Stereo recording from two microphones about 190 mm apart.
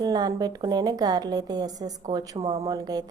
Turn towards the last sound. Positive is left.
turn(degrees=-20)  # may be behind; listen again after turning